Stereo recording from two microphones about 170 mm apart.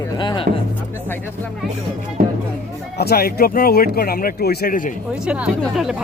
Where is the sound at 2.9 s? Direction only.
65° left (ahead or behind).